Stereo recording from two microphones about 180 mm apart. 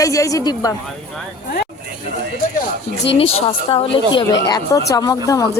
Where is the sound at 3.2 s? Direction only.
30° left (ahead or behind).